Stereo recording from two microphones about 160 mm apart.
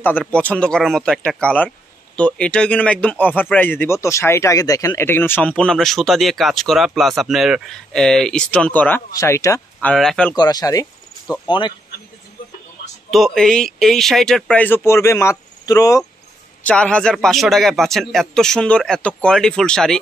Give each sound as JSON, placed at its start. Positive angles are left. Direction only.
{"t": 0.2, "sound": "a man's voice", "side_deg": 10}
{"t": 9.8, "sound": "speech", "side_deg": 5}
{"t": 10.3, "sound": "speech", "side_deg": 25}
{"t": 13.1, "sound": "a man's voice", "side_deg": 0}
{"t": 16.6, "sound": "a man's voice", "side_deg": 5}